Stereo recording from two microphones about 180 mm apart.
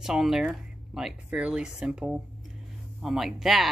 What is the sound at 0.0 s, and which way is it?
Speech, centre (ahead or behind).